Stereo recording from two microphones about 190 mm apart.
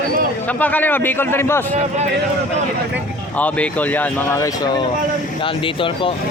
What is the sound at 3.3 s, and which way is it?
Speech, 10° left (ahead or behind).